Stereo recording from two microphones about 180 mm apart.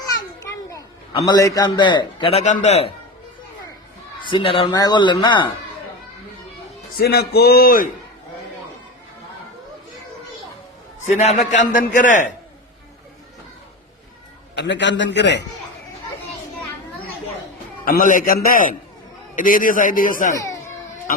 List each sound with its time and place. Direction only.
1.3 s a man's voice: 20° left (ahead or behind); by 2.9 s 35° left (ahead or behind)
4.2 s a man's voice: 25° left (ahead or behind)
6.9 s speech: 60° left (ahead or behind)
11.0 s a man's voice: 40° left (ahead or behind)
14.5 s a man's voice: 75° left (ahead or behind)
17.8 s a man's voice: 50° left (ahead or behind)
20.3 s a child's voice: 20° left (ahead or behind)